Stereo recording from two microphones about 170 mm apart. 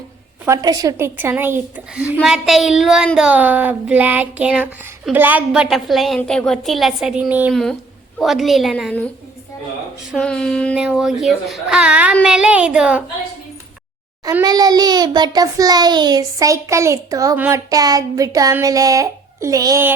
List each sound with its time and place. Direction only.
0.4 s a woman's voice: 20° right (ahead or behind)
7.5 s speech: centre (ahead or behind)
10.1 s a woman's voice: 5° left (ahead or behind)
14.4 s a child's voice: 25° right (ahead or behind)